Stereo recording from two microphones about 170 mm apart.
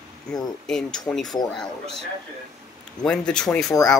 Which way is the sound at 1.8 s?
35° right (ahead or behind).